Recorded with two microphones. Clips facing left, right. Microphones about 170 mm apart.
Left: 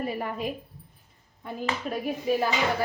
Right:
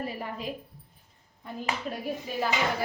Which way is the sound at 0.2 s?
55° left (ahead or behind).